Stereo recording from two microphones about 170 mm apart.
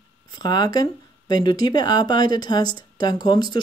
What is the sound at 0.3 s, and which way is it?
Speech, 25° left (ahead or behind).